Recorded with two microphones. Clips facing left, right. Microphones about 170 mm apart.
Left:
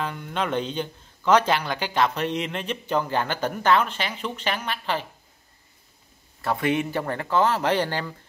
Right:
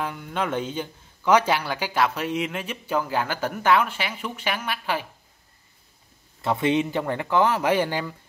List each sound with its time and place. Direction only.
0.0 s speech: 5° right (ahead or behind)
6.4 s speech: 20° right (ahead or behind)